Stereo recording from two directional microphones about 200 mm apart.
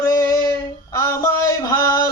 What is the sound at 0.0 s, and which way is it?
Female singing, 15° left (ahead or behind).